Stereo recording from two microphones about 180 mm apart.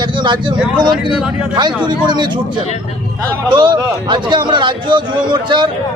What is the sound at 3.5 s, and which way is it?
A man's voice, 25° right (ahead or behind).